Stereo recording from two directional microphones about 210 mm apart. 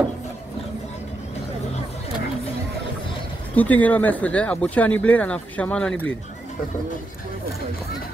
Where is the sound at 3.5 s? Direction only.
10° left (ahead or behind).